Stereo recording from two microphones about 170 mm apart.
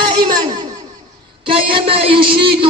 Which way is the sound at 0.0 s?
25° right (ahead or behind).